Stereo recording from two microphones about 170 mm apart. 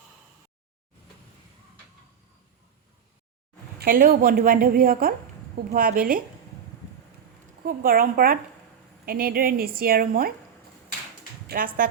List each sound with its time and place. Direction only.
3.8 s a woman's voice: 55° right (ahead or behind)
7.6 s a woman's voice: 55° right (ahead or behind)
11.4 s speech: 60° right (ahead or behind)